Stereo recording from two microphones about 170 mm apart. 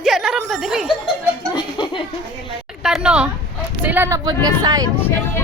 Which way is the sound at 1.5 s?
25° left (ahead or behind).